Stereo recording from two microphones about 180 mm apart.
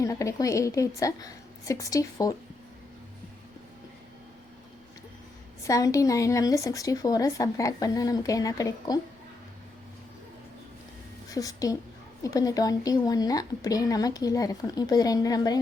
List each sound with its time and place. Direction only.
0.0 s a woman's voice: 15° left (ahead or behind)
5.6 s speech: 20° left (ahead or behind)
11.3 s a woman's voice: 20° left (ahead or behind)